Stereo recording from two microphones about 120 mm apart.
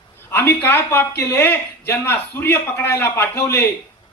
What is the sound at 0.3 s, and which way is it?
A man's voice, 20° left (ahead or behind).